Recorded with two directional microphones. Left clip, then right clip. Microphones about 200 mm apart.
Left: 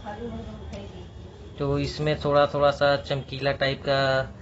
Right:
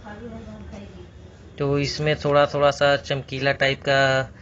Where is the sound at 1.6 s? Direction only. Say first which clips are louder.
Right 4 dB; 15° right (ahead or behind).